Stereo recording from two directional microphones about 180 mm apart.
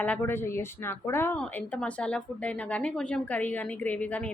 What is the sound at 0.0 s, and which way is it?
A woman's voice, 10° left (ahead or behind).